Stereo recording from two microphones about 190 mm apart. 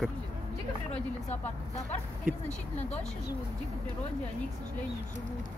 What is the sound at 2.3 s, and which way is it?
Speech, 45° right (ahead or behind).